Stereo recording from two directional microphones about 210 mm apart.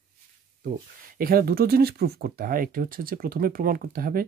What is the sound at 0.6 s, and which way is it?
Speech, 40° right (ahead or behind).